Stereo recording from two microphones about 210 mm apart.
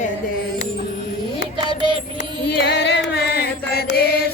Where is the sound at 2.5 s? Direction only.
50° left (ahead or behind).